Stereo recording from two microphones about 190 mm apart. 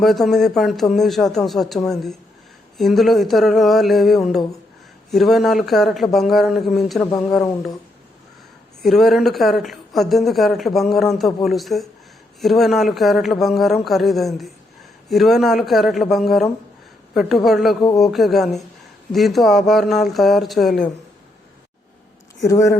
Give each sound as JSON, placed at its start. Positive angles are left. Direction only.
{"t": 0.0, "sound": "speech", "side_deg": 0}
{"t": 8.8, "sound": "speech", "side_deg": 0}
{"t": 22.4, "sound": "speech", "side_deg": 15}